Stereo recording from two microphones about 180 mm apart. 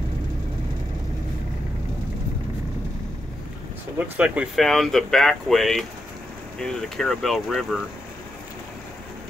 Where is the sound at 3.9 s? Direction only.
10° right (ahead or behind).